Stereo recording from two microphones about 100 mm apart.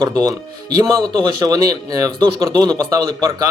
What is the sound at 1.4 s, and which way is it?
Speech, 40° right (ahead or behind).